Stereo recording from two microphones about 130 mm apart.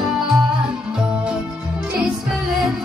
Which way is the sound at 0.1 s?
5° right (ahead or behind).